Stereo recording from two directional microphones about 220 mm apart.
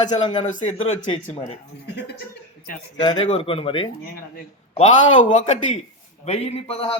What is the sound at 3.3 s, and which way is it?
A man's voice, 25° left (ahead or behind).